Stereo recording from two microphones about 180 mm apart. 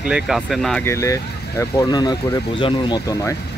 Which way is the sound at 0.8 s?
15° left (ahead or behind).